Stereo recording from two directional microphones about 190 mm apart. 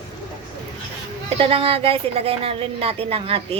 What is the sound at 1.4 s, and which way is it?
Speech, 30° right (ahead or behind).